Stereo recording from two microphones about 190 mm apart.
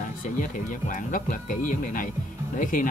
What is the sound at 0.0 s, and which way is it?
Speech, 45° left (ahead or behind).